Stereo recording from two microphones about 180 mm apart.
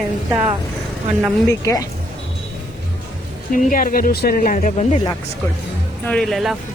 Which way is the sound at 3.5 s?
50° left (ahead or behind).